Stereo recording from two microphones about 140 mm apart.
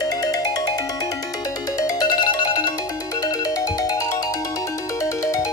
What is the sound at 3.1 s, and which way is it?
Ringtone, 25° left (ahead or behind).